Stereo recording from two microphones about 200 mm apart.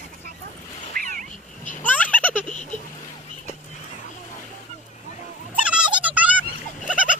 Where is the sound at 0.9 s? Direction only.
45° right (ahead or behind).